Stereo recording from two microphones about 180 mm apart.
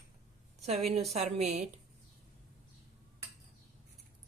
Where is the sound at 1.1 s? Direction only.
35° right (ahead or behind).